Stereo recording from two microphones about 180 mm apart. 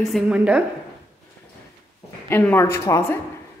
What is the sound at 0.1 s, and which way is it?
Speech, 5° right (ahead or behind).